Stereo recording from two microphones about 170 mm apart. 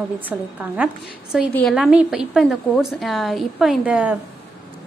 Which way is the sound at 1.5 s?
10° left (ahead or behind).